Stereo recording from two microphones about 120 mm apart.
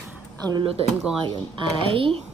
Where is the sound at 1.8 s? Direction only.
50° right (ahead or behind).